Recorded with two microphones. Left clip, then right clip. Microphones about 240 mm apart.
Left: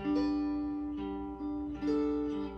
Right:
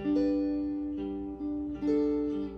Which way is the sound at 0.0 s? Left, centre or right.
Centre.